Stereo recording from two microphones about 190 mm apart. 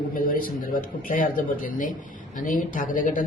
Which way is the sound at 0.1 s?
50° left (ahead or behind).